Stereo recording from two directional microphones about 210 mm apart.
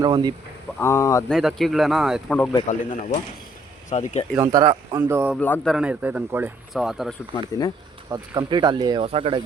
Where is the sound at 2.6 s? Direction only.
35° left (ahead or behind).